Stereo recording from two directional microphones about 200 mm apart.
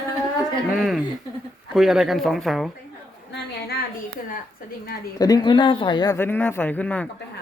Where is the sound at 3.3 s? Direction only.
55° left (ahead or behind).